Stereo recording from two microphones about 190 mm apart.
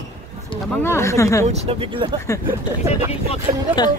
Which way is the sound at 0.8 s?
15° left (ahead or behind).